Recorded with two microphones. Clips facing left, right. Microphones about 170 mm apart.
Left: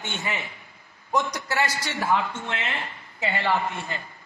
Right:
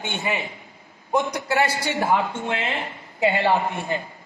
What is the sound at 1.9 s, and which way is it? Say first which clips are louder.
Speech: right 3 dB; 15° right (ahead or behind).